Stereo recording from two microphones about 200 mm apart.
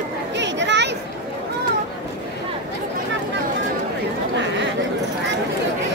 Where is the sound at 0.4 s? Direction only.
60° right (ahead or behind).